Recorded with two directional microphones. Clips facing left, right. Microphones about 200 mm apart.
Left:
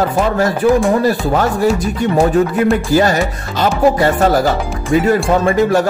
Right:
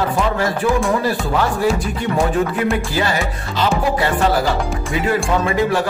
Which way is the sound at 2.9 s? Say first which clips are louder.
Left 7 dB; 45° left (ahead or behind).